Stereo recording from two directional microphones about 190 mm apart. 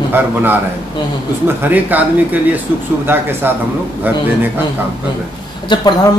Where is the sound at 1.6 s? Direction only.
10° right (ahead or behind).